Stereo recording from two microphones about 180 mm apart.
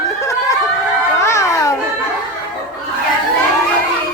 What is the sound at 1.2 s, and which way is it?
Children playing, 15° left (ahead or behind).